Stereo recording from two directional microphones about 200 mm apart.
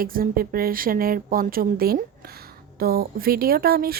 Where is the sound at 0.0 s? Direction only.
45° right (ahead or behind).